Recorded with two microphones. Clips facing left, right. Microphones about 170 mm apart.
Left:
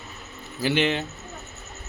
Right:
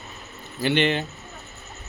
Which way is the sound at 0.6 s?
5° left (ahead or behind).